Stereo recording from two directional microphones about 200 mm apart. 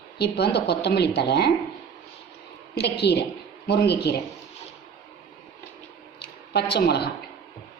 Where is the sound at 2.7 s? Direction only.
55° left (ahead or behind).